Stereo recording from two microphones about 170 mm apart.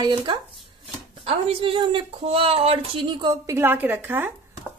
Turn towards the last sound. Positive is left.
turn(degrees=-10)  # may be behind; listen again after turning